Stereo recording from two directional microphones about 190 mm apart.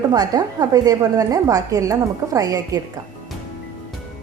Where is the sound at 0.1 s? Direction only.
20° right (ahead or behind).